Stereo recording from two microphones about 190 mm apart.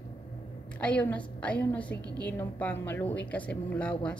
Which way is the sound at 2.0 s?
20° right (ahead or behind).